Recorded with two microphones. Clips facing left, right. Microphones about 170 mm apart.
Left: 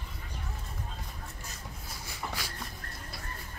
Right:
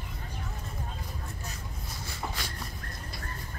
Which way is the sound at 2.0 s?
10° left (ahead or behind).